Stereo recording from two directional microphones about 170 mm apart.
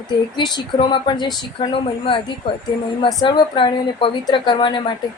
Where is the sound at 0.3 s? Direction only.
25° left (ahead or behind).